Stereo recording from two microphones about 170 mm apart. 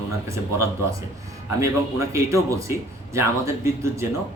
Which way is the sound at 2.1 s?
15° right (ahead or behind).